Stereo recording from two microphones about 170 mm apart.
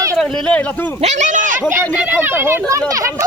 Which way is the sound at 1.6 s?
15° right (ahead or behind).